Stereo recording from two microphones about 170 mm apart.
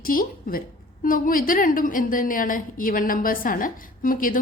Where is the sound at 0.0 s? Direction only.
55° left (ahead or behind).